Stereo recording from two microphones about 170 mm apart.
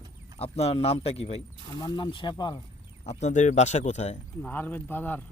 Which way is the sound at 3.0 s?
45° left (ahead or behind).